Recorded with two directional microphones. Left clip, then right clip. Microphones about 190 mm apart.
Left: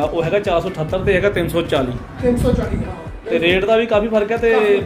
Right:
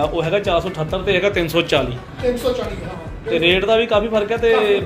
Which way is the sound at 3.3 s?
15° left (ahead or behind).